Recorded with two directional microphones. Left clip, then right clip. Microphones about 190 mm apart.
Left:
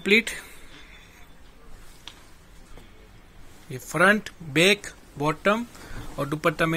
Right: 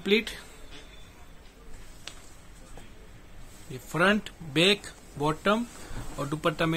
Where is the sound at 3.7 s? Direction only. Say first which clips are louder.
Left 5 dB; 20° left (ahead or behind).